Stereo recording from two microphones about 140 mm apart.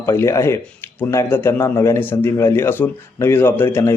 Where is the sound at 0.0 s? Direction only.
20° left (ahead or behind).